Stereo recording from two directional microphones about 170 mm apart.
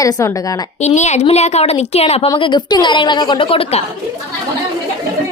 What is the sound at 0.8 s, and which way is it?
A woman's voice, 45° left (ahead or behind).